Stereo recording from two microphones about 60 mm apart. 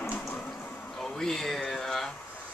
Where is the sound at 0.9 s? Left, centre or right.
Centre.